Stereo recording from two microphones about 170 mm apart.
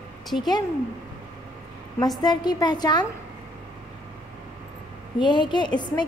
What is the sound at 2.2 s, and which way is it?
Speech, 25° left (ahead or behind).